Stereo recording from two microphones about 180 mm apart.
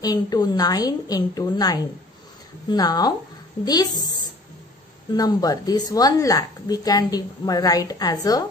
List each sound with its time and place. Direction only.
0.0 s speech: 20° left (ahead or behind)